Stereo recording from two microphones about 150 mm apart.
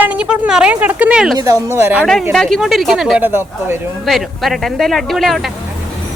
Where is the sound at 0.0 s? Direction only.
10° right (ahead or behind).